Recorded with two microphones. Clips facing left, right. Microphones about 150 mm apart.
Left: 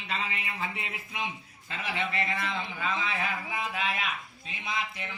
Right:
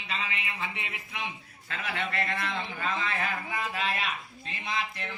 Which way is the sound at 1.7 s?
10° left (ahead or behind).